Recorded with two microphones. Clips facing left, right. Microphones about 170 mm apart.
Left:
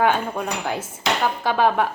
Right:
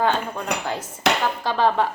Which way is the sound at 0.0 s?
10° left (ahead or behind).